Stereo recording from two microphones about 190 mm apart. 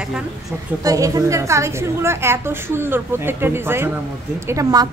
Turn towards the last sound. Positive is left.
turn(degrees=-20)  # may be behind; listen again after turning